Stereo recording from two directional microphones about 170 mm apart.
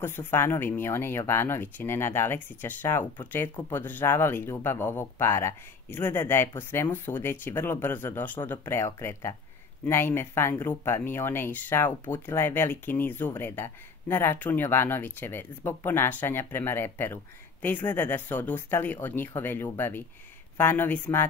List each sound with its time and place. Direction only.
0.0 s speech: 15° left (ahead or behind)